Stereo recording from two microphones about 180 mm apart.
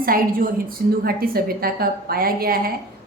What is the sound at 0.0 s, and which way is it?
A woman's voice, 55° right (ahead or behind).